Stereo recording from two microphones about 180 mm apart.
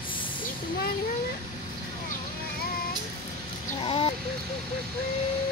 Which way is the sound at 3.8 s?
30° left (ahead or behind).